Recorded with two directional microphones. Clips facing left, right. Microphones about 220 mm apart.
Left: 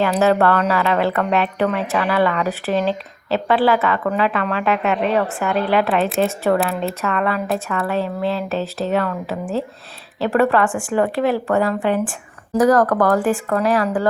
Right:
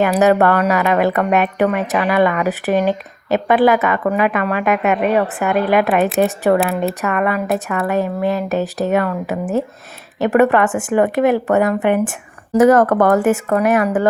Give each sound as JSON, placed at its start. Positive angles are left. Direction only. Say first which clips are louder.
{"t": 0.0, "sound": "a woman's voice", "louder": "right 3 dB", "side_deg": -15}